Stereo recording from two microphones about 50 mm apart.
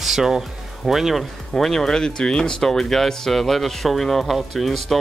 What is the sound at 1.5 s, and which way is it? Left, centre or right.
Speech, centre.